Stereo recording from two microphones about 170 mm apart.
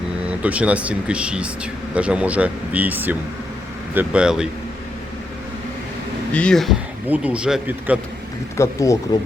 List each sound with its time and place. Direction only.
0.3 s speech: 10° right (ahead or behind)
6.3 s speech: 5° left (ahead or behind)
8.5 s speech: 15° left (ahead or behind)